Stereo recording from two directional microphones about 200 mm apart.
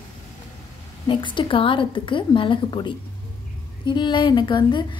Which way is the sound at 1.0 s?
25° left (ahead or behind).